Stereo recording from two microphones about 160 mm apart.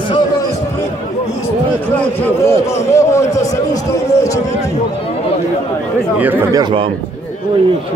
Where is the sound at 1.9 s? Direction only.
15° left (ahead or behind).